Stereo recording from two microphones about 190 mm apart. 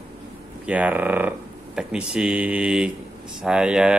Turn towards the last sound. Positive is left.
turn(degrees=-5)  # may be behind; listen again after turning